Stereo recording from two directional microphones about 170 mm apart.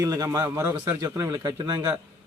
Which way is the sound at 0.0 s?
20° right (ahead or behind).